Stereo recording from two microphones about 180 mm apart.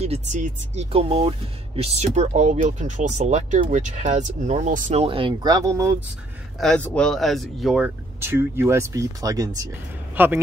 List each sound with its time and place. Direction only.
0.0 s speech: 40° right (ahead or behind)
5.0 s speech: 30° right (ahead or behind)
6.6 s a man's voice: 5° left (ahead or behind); by 10.4 s 10° right (ahead or behind)